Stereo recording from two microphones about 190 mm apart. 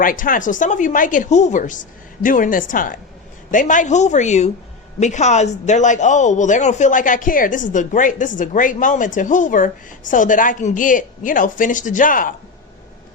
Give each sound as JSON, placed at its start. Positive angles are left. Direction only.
{"t": 0.0, "sound": "a woman's voice", "side_deg": 45}